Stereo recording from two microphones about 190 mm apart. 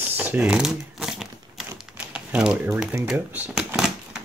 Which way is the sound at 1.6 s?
5° right (ahead or behind).